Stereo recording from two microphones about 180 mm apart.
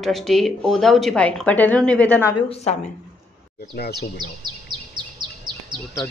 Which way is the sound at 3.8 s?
65° left (ahead or behind).